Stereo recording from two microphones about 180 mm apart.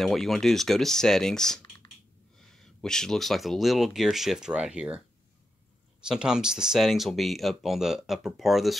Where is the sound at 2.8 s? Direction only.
5° left (ahead or behind).